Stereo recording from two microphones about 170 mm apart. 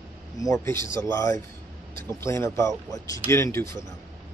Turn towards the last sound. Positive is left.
turn(degrees=15)  # may be behind; listen again after turning